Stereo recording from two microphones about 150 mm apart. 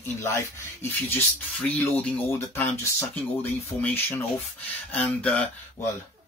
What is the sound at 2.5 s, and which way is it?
Speech, 15° left (ahead or behind).